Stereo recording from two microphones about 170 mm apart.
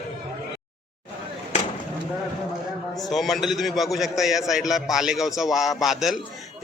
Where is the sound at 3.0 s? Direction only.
Centre (ahead or behind).